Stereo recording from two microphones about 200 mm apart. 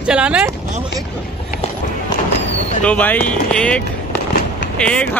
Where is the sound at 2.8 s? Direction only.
5° left (ahead or behind).